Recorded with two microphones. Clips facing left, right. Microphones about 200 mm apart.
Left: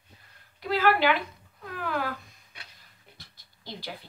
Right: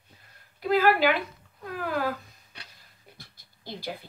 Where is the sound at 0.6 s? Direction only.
45° right (ahead or behind).